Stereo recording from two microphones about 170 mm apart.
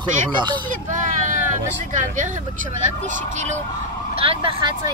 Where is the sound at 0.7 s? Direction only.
50° right (ahead or behind).